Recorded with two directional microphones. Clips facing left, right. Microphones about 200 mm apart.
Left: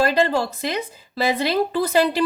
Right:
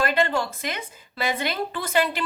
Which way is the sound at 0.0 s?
35° left (ahead or behind).